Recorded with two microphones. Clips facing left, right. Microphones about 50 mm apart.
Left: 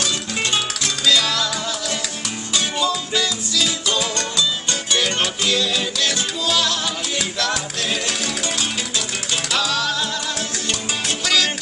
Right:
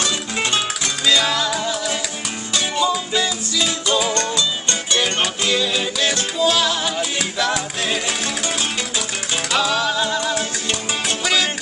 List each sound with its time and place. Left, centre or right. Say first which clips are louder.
0.0 s music: right 1 dB; centre
5.2 s music: right 1 dB; centre